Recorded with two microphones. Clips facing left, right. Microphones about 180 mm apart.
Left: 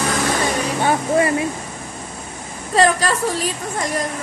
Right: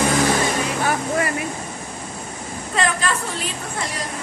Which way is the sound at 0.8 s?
25° left (ahead or behind).